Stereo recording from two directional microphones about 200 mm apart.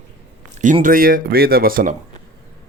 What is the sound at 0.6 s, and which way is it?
Speech, 40° right (ahead or behind).